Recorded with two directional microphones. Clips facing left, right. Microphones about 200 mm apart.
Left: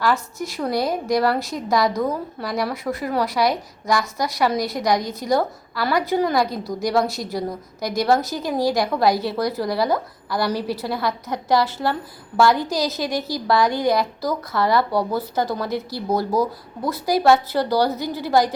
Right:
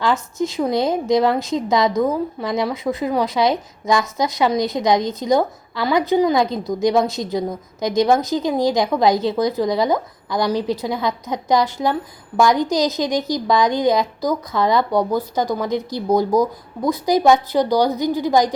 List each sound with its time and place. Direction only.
0.0 s a woman's voice: 20° right (ahead or behind)